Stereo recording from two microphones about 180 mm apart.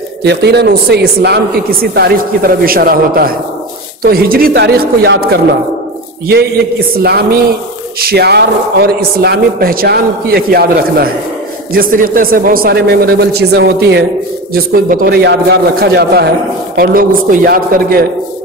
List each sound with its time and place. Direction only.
0.2 s a woman's voice: 70° right (ahead or behind)
7.0 s a woman's voice: 65° right (ahead or behind)
14.5 s a woman's voice: 55° right (ahead or behind)